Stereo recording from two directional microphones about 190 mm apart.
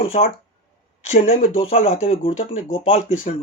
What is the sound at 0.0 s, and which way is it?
Speech, 30° left (ahead or behind).